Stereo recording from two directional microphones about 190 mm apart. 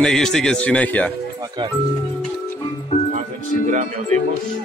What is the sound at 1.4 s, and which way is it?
Speech, 25° right (ahead or behind).